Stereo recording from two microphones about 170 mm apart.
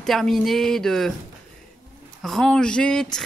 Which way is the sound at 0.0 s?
Centre (ahead or behind).